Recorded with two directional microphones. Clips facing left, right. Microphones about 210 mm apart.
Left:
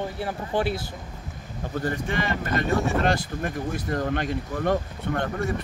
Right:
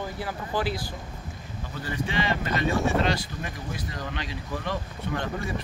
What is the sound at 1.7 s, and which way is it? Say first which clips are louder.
Speech: left 3 dB; 50° left (ahead or behind).